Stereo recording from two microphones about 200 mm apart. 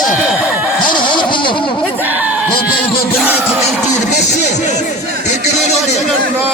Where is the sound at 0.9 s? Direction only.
25° left (ahead or behind).